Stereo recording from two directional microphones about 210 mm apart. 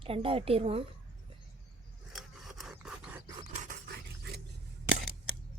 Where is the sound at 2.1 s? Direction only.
Centre (ahead or behind).